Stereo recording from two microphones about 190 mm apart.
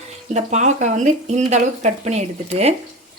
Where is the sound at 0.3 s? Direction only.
35° right (ahead or behind).